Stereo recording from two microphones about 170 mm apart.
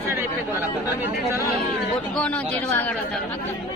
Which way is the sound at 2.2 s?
10° left (ahead or behind).